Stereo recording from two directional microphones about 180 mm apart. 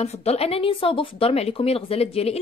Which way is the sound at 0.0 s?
35° left (ahead or behind).